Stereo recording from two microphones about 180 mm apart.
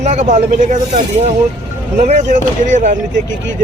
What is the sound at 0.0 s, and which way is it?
Speech, 40° right (ahead or behind).